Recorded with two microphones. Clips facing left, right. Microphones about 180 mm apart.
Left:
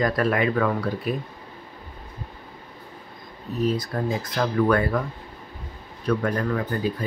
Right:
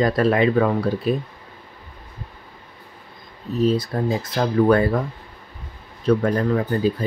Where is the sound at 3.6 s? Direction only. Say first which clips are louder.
Right 5 dB; 30° right (ahead or behind).